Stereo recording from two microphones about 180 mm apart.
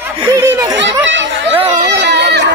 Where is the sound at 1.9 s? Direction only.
70° right (ahead or behind).